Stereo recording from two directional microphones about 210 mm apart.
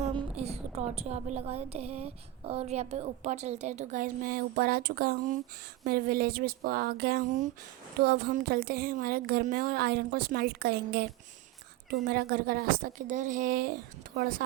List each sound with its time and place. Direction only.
0.0 s a woman's voice: 25° right (ahead or behind)